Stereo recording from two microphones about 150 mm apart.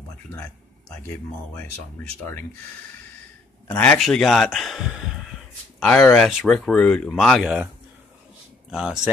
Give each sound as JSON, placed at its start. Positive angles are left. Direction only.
{"t": 1.0, "sound": "speech", "side_deg": 15}
{"t": 3.7, "sound": "speech", "side_deg": 10}
{"t": 5.8, "sound": "speech", "side_deg": 10}
{"t": 8.6, "sound": "speech", "side_deg": 0}